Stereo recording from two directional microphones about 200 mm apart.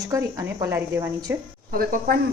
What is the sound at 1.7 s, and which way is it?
Speech, 45° right (ahead or behind).